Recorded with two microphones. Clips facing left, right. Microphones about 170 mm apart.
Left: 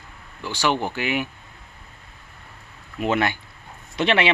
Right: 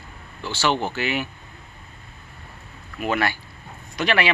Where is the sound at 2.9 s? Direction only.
20° left (ahead or behind).